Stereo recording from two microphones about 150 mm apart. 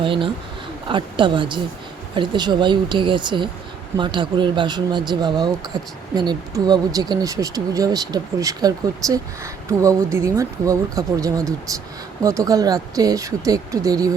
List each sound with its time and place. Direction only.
0.0 s speech: 35° right (ahead or behind)